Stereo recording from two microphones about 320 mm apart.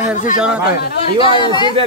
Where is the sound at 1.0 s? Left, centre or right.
Centre.